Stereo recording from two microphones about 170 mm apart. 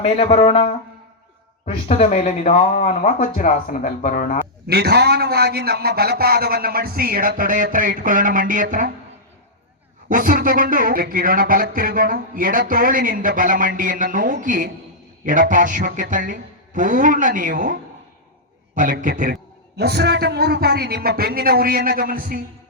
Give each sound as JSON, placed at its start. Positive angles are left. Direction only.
{"t": 0.0, "sound": "a woman's voice", "side_deg": 35}
{"t": 2.7, "sound": "speech", "side_deg": 55}
{"t": 4.6, "sound": "a sound", "side_deg": -70}
{"t": 10.1, "sound": "a sound", "side_deg": -55}
{"t": 15.2, "sound": "a woman's voice", "side_deg": -50}
{"t": 19.7, "sound": "a man's voice", "side_deg": -70}